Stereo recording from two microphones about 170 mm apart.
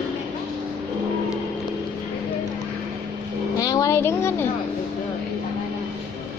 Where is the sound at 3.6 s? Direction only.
20° left (ahead or behind).